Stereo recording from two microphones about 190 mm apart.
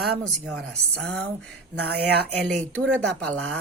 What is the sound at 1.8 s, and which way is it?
Speech, 60° right (ahead or behind).